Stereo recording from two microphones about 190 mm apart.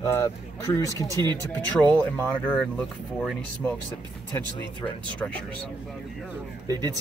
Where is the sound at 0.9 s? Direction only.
20° right (ahead or behind).